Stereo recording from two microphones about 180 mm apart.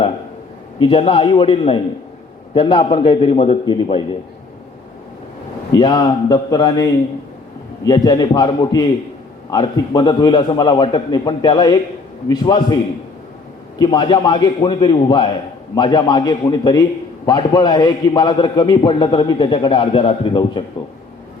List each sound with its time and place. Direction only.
0.8 s a man's voice: 30° left (ahead or behind)
5.7 s a man's voice: 25° left (ahead or behind)
7.9 s a man's voice: 25° left (ahead or behind)